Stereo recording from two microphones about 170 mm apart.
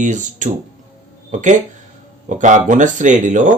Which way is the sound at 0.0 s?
45° right (ahead or behind).